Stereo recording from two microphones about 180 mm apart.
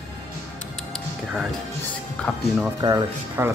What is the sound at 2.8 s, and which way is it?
Speech, 20° right (ahead or behind).